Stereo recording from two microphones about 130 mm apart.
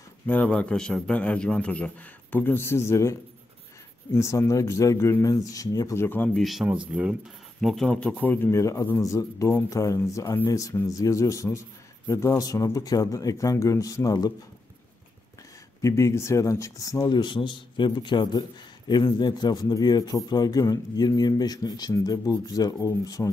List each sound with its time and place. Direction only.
0.3 s a man's voice: 10° left (ahead or behind)
6.3 s speech: centre (ahead or behind)
7.6 s a man's voice: 5° left (ahead or behind); by 14.3 s 25° left (ahead or behind)
15.8 s a man's voice: 25° left (ahead or behind)